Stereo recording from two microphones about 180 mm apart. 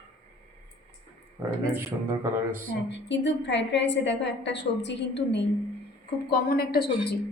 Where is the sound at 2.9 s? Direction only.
80° left.